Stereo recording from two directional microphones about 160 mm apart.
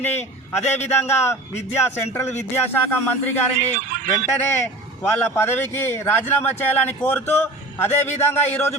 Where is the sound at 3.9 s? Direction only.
55° right (ahead or behind).